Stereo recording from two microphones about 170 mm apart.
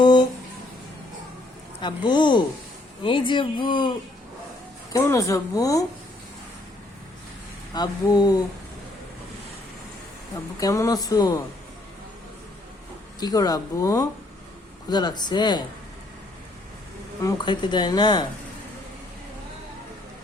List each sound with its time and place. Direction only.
0.0 s music: 25° left (ahead or behind)
1.8 s speech: 25° left (ahead or behind)
4.9 s speech: 20° left (ahead or behind)
7.7 s speech: 25° left (ahead or behind)
10.6 s speech: 20° left (ahead or behind)
13.1 s speech: 20° left (ahead or behind)
17.2 s speech: 25° left (ahead or behind)